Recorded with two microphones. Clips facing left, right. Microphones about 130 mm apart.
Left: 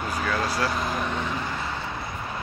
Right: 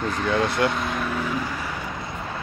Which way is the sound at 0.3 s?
25° right (ahead or behind).